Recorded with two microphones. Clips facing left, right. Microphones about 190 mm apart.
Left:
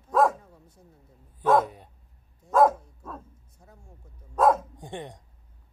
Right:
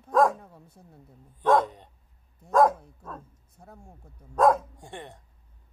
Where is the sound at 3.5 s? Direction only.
60° right (ahead or behind).